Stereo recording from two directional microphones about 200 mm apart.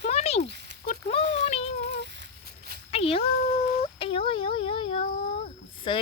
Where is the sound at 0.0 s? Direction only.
30° left (ahead or behind).